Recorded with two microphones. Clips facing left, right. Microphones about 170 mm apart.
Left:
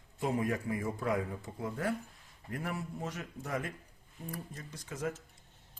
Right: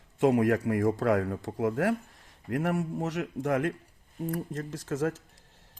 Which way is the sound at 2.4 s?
75° right (ahead or behind).